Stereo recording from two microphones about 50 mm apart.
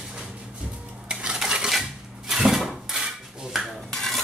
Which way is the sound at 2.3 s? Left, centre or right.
Centre.